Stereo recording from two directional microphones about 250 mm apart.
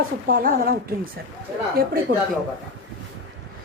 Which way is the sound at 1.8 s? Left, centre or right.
Right.